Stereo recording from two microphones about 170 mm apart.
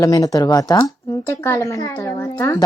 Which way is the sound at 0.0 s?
20° left (ahead or behind).